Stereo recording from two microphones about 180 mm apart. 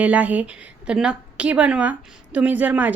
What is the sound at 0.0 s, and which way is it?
A woman's voice, 10° right (ahead or behind).